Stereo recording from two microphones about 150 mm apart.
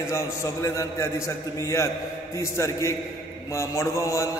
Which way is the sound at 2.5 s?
20° left (ahead or behind).